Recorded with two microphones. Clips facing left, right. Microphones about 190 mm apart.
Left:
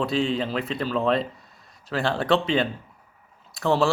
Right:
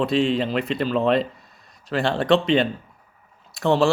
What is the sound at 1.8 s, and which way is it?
Speech, centre (ahead or behind).